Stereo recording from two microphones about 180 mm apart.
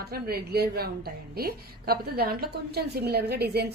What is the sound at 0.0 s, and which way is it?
A woman's voice, 60° right (ahead or behind).